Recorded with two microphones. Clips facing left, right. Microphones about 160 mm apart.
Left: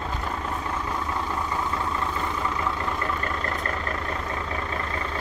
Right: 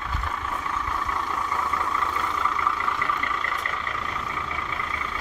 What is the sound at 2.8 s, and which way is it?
Vehicle, 35° left (ahead or behind).